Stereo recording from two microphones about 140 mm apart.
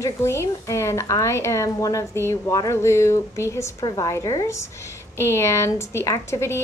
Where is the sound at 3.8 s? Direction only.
30° left (ahead or behind).